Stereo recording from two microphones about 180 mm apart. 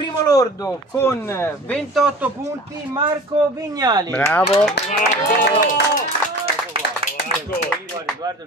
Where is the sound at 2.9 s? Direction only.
20° right (ahead or behind).